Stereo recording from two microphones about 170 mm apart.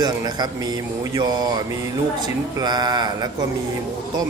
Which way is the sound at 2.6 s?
25° right (ahead or behind).